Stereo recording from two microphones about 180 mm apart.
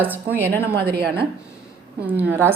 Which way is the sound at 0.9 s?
60° right (ahead or behind).